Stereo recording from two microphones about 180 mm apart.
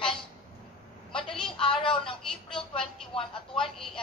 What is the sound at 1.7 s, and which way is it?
Speech, 30° left (ahead or behind).